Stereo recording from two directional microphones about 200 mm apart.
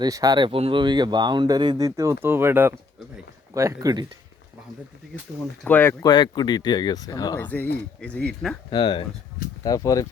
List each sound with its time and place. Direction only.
0.0 s speech: 20° right (ahead or behind)
5.6 s speech: 10° left (ahead or behind)
8.7 s speech: 25° left (ahead or behind)